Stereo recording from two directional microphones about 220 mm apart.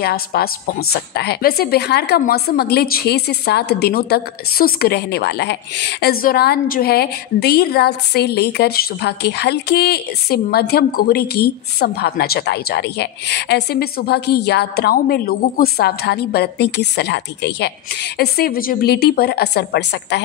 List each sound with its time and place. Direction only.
0.0 s a woman's voice: 45° left (ahead or behind)